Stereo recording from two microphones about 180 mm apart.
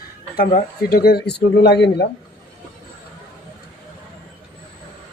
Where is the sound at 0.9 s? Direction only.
60° left (ahead or behind).